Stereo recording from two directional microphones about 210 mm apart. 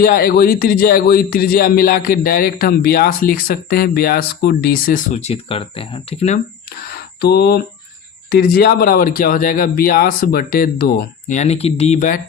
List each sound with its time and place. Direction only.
0.0 s speech: 45° left (ahead or behind)
6.8 s speech: 50° left (ahead or behind)